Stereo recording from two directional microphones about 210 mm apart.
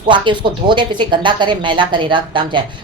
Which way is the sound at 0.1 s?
20° right (ahead or behind).